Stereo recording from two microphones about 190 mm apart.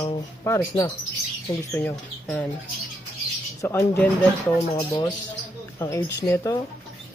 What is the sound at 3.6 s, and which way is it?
Speech, 15° left (ahead or behind).